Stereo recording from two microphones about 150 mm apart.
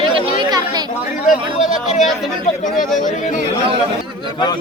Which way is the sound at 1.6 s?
Centre (ahead or behind).